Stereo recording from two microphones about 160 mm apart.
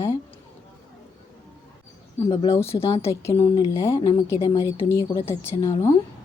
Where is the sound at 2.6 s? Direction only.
35° left (ahead or behind).